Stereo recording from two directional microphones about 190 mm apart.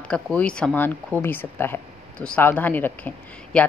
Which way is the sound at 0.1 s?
5° left (ahead or behind).